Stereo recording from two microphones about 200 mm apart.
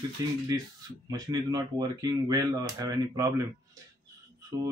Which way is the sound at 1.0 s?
20° right (ahead or behind).